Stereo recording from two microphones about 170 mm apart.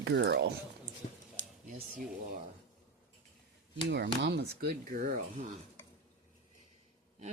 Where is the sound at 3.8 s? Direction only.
85° right; by 4.7 s 70° right (ahead or behind).